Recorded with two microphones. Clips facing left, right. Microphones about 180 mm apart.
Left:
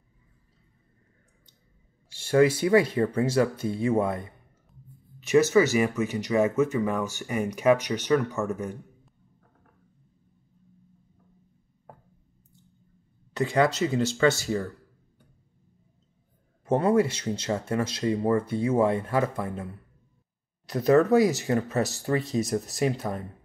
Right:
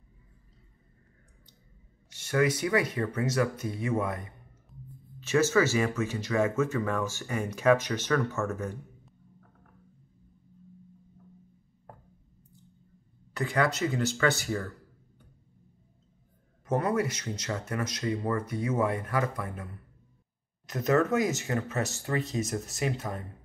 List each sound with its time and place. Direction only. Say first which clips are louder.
2.0 s speech: left 6 dB; 30° left (ahead or behind)
5.2 s speech: left 4 dB; 15° left (ahead or behind)
13.3 s speech: left 5 dB; 25° left (ahead or behind)
16.6 s speech: left 6 dB; 30° left (ahead or behind)